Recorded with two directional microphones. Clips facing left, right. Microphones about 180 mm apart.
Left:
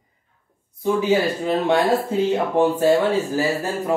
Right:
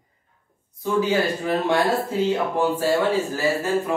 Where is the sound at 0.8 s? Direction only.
20° left (ahead or behind).